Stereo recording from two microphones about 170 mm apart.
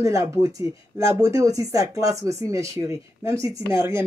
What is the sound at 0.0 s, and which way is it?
Speech, 20° right (ahead or behind).